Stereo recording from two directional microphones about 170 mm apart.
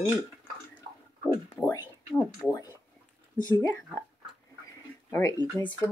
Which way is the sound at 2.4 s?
20° left (ahead or behind).